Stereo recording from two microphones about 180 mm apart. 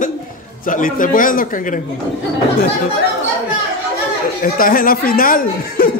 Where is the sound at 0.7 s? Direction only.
50° left (ahead or behind).